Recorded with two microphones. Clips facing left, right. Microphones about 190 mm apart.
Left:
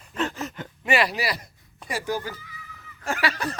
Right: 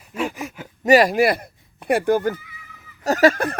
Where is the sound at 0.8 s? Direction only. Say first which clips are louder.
Right 10 dB; 40° right (ahead or behind).